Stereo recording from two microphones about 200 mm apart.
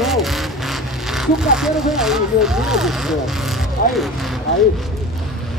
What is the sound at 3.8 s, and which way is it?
Speech, 45° left (ahead or behind).